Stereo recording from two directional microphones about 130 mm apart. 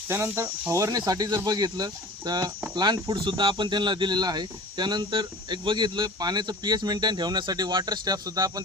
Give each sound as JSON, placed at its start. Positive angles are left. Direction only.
{"t": 0.1, "sound": "speech", "side_deg": -15}